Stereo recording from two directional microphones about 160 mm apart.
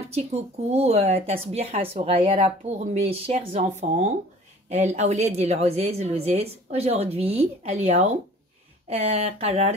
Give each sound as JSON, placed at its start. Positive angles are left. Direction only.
{"t": 0.1, "sound": "speech", "side_deg": -40}